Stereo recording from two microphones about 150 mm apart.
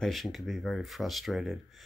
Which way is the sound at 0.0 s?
Centre (ahead or behind).